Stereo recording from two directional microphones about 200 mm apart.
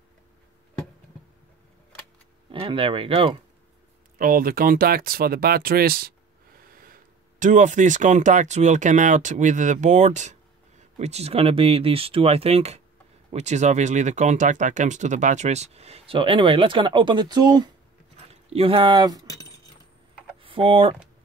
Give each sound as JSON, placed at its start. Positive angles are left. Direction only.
{"t": 2.6, "sound": "speech", "side_deg": -25}
{"t": 4.2, "sound": "speech", "side_deg": -45}
{"t": 19.2, "sound": "keys jangling", "side_deg": 20}
{"t": 20.4, "sound": "speech", "side_deg": -25}